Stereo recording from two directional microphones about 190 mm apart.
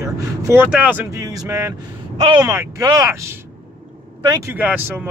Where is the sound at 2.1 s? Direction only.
25° right (ahead or behind).